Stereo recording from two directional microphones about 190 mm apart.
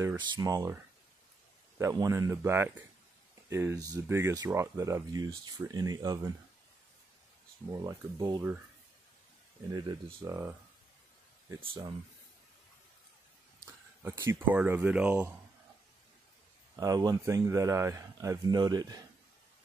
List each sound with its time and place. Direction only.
0.2 s speech: 20° right (ahead or behind)
1.8 s speech: 15° right (ahead or behind)
7.7 s speech: 20° right (ahead or behind)
9.7 s speech: 20° right (ahead or behind)
11.6 s speech: 30° right (ahead or behind)
14.0 s speech: 10° right (ahead or behind)
16.7 s speech: 20° right (ahead or behind)